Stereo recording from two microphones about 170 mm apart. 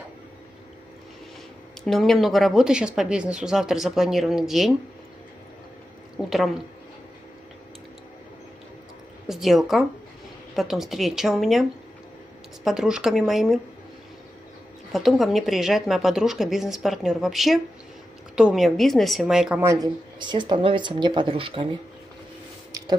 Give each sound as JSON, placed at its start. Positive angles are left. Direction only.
{"t": 1.9, "sound": "speech", "side_deg": 0}
{"t": 6.1, "sound": "a woman's voice", "side_deg": 0}
{"t": 9.3, "sound": "speech", "side_deg": 0}
{"t": 12.6, "sound": "speech", "side_deg": -5}
{"t": 14.9, "sound": "speech", "side_deg": 0}
{"t": 19.6, "sound": "speech", "side_deg": -20}
{"t": 22.7, "sound": "a sound", "side_deg": -20}